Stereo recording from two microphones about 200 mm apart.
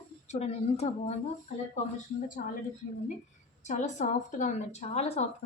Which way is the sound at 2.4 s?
45° left (ahead or behind).